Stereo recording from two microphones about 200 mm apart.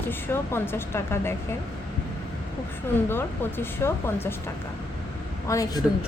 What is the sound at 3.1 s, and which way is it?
A woman's voice, 10° left (ahead or behind).